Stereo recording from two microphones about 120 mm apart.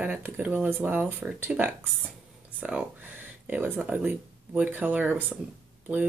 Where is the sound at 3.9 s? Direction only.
15° right (ahead or behind).